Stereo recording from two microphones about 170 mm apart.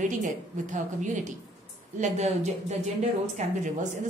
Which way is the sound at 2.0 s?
40° right (ahead or behind).